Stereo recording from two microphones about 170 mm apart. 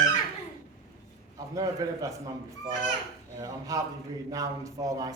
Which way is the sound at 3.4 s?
20° right (ahead or behind).